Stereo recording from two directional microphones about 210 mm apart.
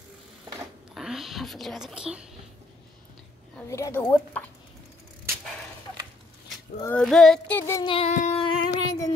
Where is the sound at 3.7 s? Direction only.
15° left (ahead or behind).